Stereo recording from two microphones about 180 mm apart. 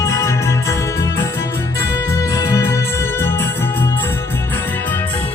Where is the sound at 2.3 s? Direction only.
15° left (ahead or behind).